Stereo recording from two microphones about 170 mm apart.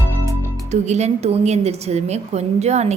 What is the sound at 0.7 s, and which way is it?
A woman's voice, 40° right (ahead or behind).